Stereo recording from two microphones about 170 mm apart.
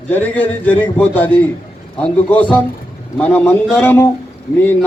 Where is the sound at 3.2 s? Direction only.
10° left (ahead or behind).